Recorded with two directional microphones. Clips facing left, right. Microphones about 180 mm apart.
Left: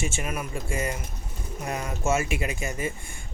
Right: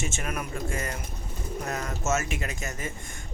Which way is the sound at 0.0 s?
10° left (ahead or behind).